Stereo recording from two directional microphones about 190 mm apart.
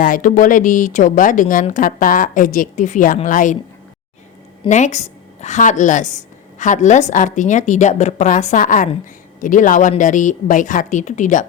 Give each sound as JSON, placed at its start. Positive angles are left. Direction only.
{"t": 0.0, "sound": "speech", "side_deg": 45}
{"t": 4.7, "sound": "a woman's voice", "side_deg": 35}